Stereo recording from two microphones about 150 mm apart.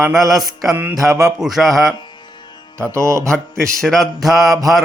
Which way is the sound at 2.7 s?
20° right (ahead or behind).